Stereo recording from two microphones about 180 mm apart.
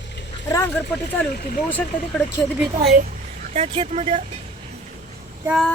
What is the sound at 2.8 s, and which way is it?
Speech, 55° right (ahead or behind).